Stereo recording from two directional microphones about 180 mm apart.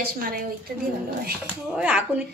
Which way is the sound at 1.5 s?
5° right (ahead or behind).